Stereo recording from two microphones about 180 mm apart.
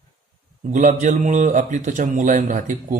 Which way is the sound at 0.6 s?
45° right (ahead or behind).